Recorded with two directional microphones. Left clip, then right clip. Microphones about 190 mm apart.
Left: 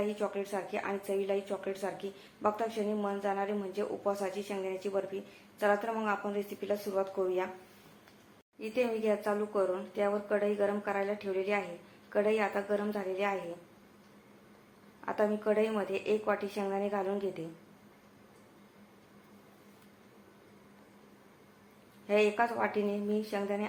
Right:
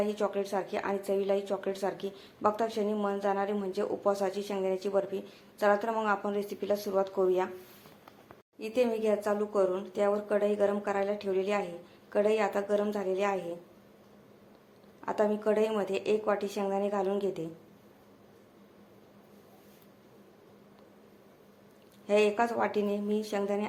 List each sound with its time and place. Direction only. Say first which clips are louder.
0.0 s speech: right 3 dB; 30° right (ahead or behind)
8.5 s speech: right 3 dB; 35° right (ahead or behind)
15.0 s speech: right 2 dB; 30° right (ahead or behind)
22.0 s speech: right 2 dB; 35° right (ahead or behind)